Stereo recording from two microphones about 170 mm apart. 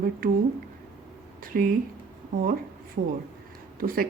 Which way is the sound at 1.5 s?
55° right (ahead or behind).